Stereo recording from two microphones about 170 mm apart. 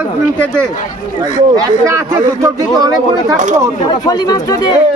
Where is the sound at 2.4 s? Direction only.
20° right (ahead or behind).